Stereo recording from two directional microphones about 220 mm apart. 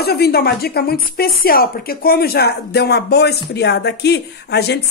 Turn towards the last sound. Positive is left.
turn(degrees=50)  # may be behind; listen again after turning